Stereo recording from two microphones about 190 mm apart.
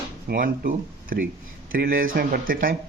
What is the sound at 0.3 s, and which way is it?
Speech, 50° right (ahead or behind).